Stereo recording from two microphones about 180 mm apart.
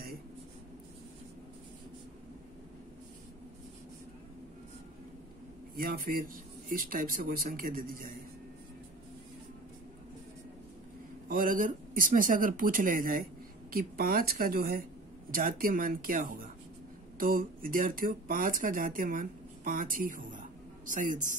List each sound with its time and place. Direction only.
5.8 s speech: 50° right (ahead or behind)
11.2 s speech: 50° right (ahead or behind)